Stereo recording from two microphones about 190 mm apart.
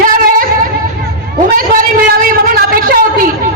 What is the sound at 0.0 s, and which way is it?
Singing, 50° right (ahead or behind).